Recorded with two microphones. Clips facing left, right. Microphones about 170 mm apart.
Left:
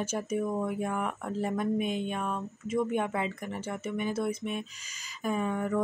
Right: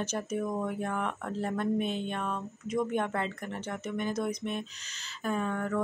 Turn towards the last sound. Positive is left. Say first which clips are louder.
# left 2 dB
turn(degrees=10)  # may be behind; listen again after turning